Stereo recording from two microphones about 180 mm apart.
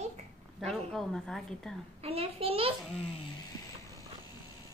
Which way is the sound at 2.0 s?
35° right (ahead or behind).